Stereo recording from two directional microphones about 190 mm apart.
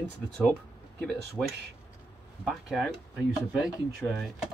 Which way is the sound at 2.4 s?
Centre (ahead or behind).